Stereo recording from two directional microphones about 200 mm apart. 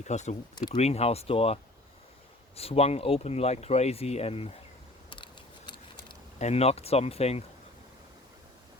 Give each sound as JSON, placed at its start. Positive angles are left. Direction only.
{"t": 0.0, "sound": "speech", "side_deg": 35}
{"t": 2.6, "sound": "speech", "side_deg": 30}
{"t": 5.0, "sound": "a sound", "side_deg": 25}